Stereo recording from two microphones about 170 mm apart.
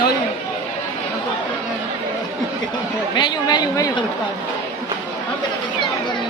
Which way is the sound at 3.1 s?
25° left (ahead or behind).